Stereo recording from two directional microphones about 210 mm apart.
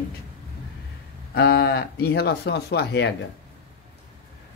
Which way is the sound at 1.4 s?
50° left (ahead or behind).